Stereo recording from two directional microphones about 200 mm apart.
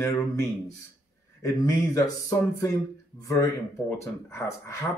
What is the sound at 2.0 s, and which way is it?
A man's voice, 15° left (ahead or behind).